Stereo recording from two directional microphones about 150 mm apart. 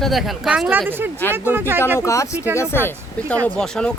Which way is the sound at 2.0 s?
20° left (ahead or behind).